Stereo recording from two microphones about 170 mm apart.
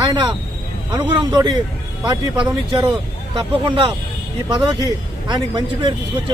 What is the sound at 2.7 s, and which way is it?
Speech, 30° right (ahead or behind).